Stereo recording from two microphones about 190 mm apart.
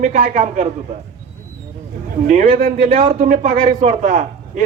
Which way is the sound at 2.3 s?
45° right (ahead or behind).